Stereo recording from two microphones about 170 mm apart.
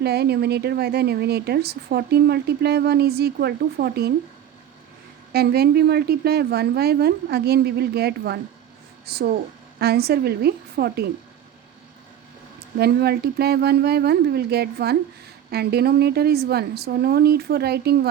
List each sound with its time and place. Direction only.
0.0 s speech: 70° right (ahead or behind)
5.3 s speech: 70° right (ahead or behind)
12.8 s speech: 70° right (ahead or behind)